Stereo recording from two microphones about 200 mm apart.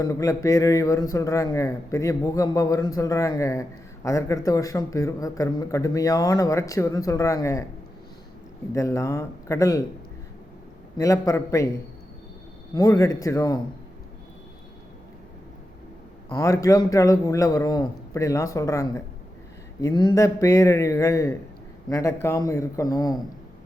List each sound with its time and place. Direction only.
0.0 s a man's voice: 15° left (ahead or behind)
8.7 s a man's voice: 15° left (ahead or behind)
10.9 s a man's voice: 15° left (ahead or behind)
12.7 s a man's voice: 15° left (ahead or behind)
16.3 s a man's voice: 15° left (ahead or behind)